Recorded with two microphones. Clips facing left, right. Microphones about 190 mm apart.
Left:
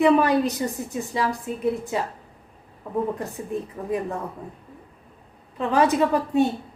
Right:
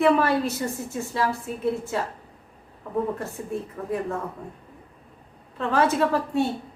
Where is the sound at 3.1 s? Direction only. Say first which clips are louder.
Left 1 dB; 15° left (ahead or behind).